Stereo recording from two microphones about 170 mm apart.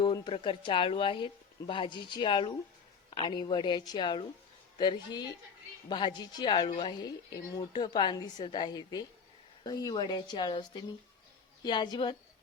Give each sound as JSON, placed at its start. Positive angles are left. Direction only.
{"t": 0.0, "sound": "speech", "side_deg": 30}